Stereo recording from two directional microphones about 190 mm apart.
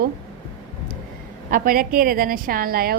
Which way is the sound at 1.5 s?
50° right (ahead or behind).